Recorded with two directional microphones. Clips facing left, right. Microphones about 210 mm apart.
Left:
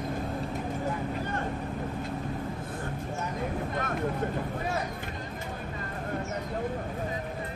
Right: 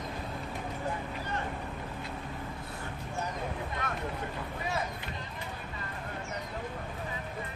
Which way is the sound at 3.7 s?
45° left (ahead or behind).